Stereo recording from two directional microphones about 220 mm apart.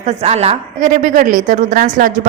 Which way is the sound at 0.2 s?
30° right (ahead or behind).